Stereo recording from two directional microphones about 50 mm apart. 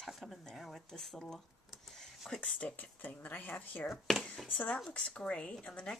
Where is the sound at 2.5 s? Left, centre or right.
Left.